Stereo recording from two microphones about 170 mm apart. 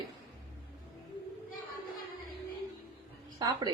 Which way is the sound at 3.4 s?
20° right (ahead or behind).